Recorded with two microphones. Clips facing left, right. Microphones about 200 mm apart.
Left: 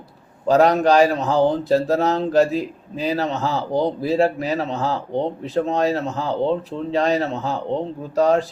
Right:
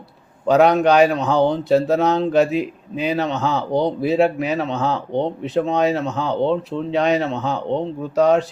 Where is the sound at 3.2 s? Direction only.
Centre (ahead or behind).